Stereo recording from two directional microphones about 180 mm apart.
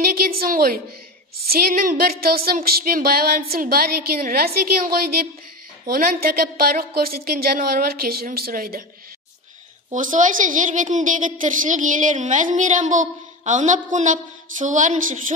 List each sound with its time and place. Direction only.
0.0 s speech: 55° right (ahead or behind)
9.8 s a woman's voice: 45° right (ahead or behind)